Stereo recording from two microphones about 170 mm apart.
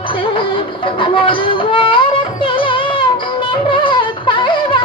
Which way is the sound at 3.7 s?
30° left (ahead or behind).